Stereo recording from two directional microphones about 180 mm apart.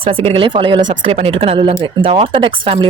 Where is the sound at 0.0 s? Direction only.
30° right (ahead or behind).